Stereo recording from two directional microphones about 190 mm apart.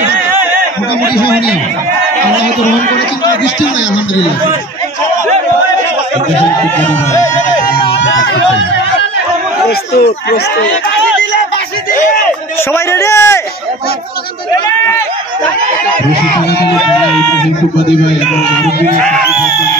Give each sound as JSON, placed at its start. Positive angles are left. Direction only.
{"t": 7.1, "sound": "a man's voice", "side_deg": 15}
{"t": 7.6, "sound": "speech", "side_deg": 65}
{"t": 9.7, "sound": "speech", "side_deg": 55}
{"t": 11.9, "sound": "a sound", "side_deg": 45}
{"t": 12.7, "sound": "a man's voice", "side_deg": 15}
{"t": 16.7, "sound": "speech", "side_deg": 0}
{"t": 18.2, "sound": "speech", "side_deg": 0}